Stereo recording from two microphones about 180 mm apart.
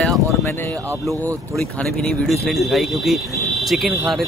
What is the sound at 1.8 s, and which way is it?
Speech, 5° left (ahead or behind).